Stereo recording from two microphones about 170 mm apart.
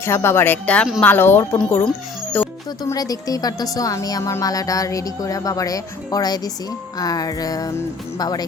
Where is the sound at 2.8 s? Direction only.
20° left (ahead or behind).